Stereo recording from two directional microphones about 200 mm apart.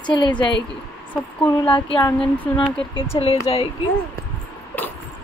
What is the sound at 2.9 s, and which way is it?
Speech, 25° left (ahead or behind).